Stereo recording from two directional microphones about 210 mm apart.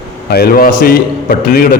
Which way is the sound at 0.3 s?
45° left (ahead or behind).